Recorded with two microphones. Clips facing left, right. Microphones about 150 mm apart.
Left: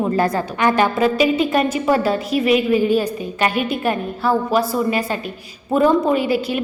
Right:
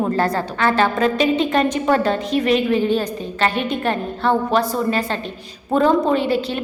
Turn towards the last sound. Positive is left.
turn(degrees=10)  # may be behind; listen again after turning